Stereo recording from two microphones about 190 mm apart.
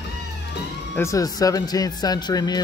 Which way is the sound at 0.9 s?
15° left (ahead or behind).